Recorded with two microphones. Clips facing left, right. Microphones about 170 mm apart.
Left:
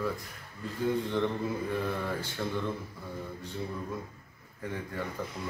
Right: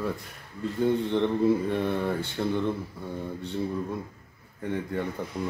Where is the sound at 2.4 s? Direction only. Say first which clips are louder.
Right 7 dB; 30° right (ahead or behind).